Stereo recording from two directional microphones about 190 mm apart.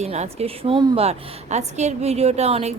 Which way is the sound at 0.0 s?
35° right (ahead or behind).